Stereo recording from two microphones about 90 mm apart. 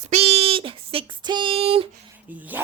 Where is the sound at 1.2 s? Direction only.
60° right (ahead or behind); by 1.9 s 90° right.